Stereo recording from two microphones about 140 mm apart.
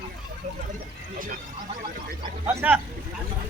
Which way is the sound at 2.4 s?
10° right (ahead or behind).